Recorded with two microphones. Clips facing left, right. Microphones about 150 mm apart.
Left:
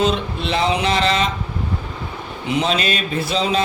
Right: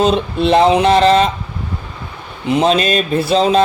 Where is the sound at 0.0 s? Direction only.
50° right (ahead or behind).